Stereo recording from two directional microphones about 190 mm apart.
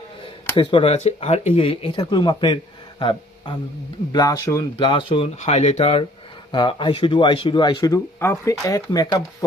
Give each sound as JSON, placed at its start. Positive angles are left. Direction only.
{"t": 0.5, "sound": "speech", "side_deg": 25}
{"t": 4.8, "sound": "speech", "side_deg": 25}